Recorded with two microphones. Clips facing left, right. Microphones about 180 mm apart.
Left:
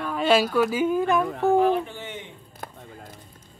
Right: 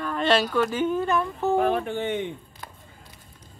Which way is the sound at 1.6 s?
55° right (ahead or behind).